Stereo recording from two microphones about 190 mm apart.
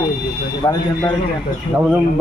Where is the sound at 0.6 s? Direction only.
20° left (ahead or behind).